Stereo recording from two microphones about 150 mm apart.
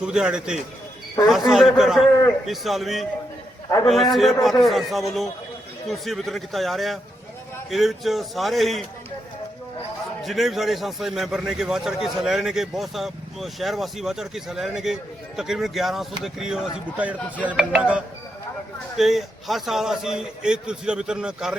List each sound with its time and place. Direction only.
0.0 s a man's voice: 5° right (ahead or behind)
10.2 s a man's voice: centre (ahead or behind)
17.4 s a sound: 10° right (ahead or behind)
18.9 s a man's voice: centre (ahead or behind)